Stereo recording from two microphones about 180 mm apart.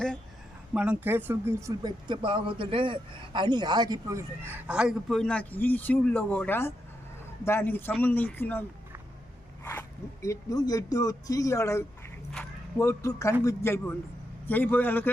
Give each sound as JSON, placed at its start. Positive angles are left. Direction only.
{"t": 0.7, "sound": "speech", "side_deg": -10}
{"t": 9.6, "sound": "speech", "side_deg": 15}